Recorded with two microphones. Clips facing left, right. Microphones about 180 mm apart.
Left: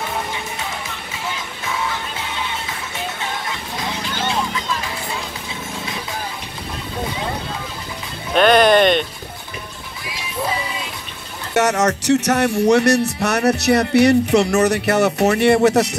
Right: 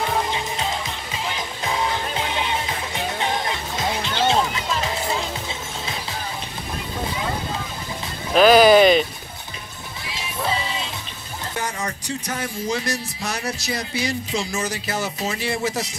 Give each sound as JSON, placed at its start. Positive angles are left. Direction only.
{"t": 1.6, "sound": "music", "side_deg": -30}
{"t": 8.3, "sound": "speech", "side_deg": 0}
{"t": 11.5, "sound": "a sound", "side_deg": 80}
{"t": 12.0, "sound": "speech", "side_deg": 75}